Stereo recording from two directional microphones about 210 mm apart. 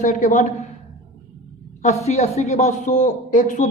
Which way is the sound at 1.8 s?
30° left (ahead or behind).